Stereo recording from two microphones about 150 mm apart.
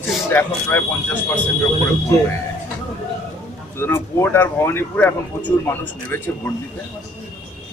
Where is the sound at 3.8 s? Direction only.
15° left (ahead or behind).